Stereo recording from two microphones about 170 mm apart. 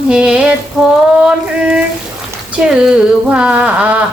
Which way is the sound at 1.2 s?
5° right (ahead or behind).